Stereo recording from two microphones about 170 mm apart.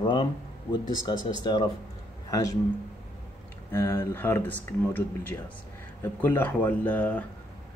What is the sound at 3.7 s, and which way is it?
Speech, 15° left (ahead or behind).